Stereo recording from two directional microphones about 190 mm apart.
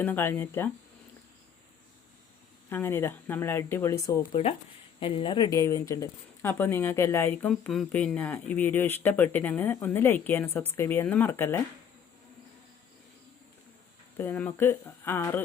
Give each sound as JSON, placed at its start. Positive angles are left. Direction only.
{"t": 0.0, "sound": "speech", "side_deg": 10}
{"t": 2.6, "sound": "speech", "side_deg": 10}
{"t": 4.3, "sound": "speech", "side_deg": 30}
{"t": 5.5, "sound": "speech", "side_deg": 15}
{"t": 14.2, "sound": "speech", "side_deg": 10}